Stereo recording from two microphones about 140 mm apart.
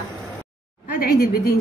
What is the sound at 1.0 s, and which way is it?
Speech, 90° left.